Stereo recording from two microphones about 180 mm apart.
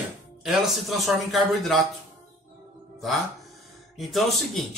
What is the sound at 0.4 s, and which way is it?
A man's voice, centre (ahead or behind).